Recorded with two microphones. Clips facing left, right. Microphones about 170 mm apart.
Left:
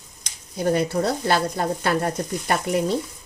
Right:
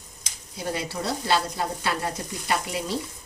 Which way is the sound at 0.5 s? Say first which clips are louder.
Left 9 dB; 50° left (ahead or behind).